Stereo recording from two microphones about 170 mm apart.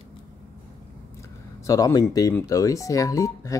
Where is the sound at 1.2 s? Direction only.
20° left (ahead or behind).